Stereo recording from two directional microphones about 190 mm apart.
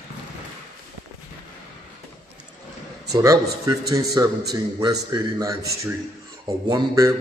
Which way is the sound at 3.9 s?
20° right (ahead or behind).